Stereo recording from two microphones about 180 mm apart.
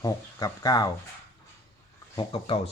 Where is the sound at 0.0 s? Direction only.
20° left (ahead or behind).